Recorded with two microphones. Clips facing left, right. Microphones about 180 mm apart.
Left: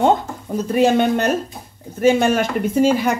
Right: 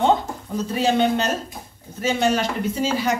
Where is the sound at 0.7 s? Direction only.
55° left (ahead or behind).